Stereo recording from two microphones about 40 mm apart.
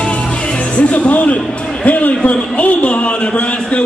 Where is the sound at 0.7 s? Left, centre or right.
Left.